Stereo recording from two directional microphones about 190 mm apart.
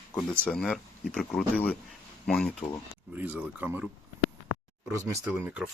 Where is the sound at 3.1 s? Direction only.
10° right (ahead or behind).